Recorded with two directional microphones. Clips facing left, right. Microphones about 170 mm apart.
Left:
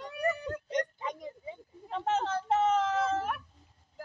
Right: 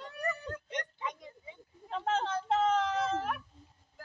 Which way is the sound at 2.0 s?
5° left (ahead or behind).